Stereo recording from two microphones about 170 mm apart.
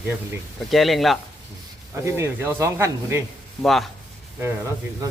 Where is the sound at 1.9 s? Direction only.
15° right (ahead or behind).